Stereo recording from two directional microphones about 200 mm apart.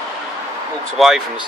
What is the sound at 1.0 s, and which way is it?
Speech, centre (ahead or behind).